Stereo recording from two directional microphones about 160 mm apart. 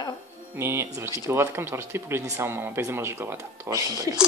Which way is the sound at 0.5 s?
15° right (ahead or behind).